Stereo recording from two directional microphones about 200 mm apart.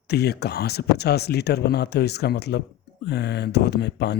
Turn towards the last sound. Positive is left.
turn(degrees=55)  # may be behind; listen again after turning